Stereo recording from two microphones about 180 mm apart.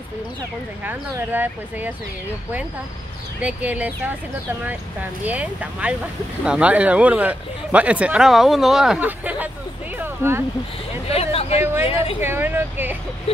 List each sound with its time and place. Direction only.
0.8 s speech: 10° right (ahead or behind)
3.3 s speech: 5° right (ahead or behind)
5.2 s speech: 10° right (ahead or behind)
11.1 s a sound: 35° left (ahead or behind)
11.8 s speech: 30° left (ahead or behind)
12.2 s speech: 10° right (ahead or behind)